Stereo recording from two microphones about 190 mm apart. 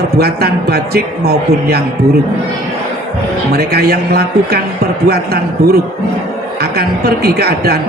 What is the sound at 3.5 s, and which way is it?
A man's voice, 55° right (ahead or behind).